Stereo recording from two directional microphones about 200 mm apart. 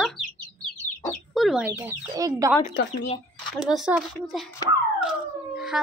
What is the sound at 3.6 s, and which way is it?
Speech, centre (ahead or behind).